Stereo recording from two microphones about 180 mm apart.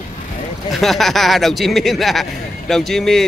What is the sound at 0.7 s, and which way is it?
Speech, centre (ahead or behind).